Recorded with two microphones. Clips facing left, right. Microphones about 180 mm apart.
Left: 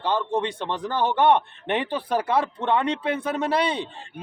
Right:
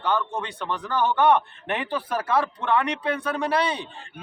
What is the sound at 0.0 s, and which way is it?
Speech, 25° left (ahead or behind).